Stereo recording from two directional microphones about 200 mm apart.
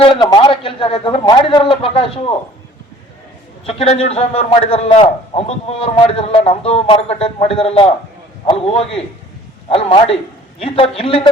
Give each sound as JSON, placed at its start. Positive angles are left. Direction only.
{"t": 0.0, "sound": "a man's voice", "side_deg": 25}
{"t": 3.7, "sound": "a man's voice", "side_deg": 30}